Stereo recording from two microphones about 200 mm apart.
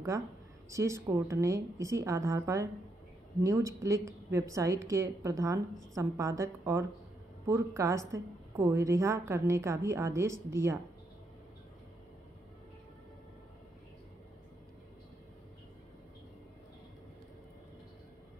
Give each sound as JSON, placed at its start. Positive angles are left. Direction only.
{"t": 0.7, "sound": "a woman's voice", "side_deg": -15}